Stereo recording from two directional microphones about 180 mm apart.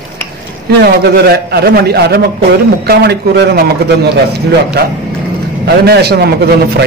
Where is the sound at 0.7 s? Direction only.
65° right (ahead or behind).